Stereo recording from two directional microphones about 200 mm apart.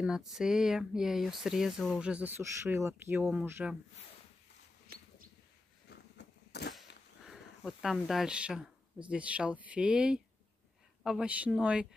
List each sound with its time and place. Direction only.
0.0 s speech: centre (ahead or behind)
5.9 s a sound: 55° left (ahead or behind)
7.2 s speech: centre (ahead or behind)